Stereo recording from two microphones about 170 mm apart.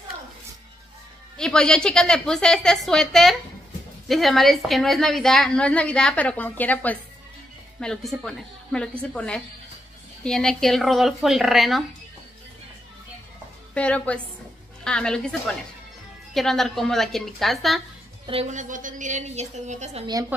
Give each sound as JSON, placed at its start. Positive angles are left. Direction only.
{"t": 1.4, "sound": "a woman's voice", "side_deg": 5}
{"t": 13.7, "sound": "a woman's voice", "side_deg": 5}
{"t": 18.2, "sound": "a woman's voice", "side_deg": -35}